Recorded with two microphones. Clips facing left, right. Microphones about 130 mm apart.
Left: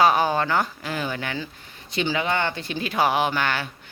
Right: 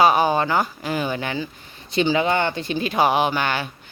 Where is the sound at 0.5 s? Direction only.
15° right (ahead or behind).